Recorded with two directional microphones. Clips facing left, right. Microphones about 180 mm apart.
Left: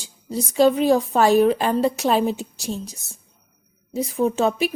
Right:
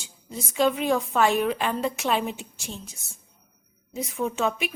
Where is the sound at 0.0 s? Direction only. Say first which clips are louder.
Left 9 dB; 35° left (ahead or behind).